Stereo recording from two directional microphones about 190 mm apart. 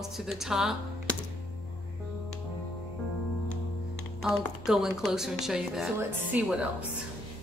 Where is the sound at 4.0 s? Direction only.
Centre (ahead or behind).